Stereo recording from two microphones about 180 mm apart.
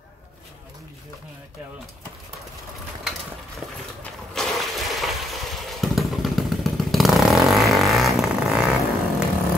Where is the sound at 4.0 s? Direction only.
Centre (ahead or behind).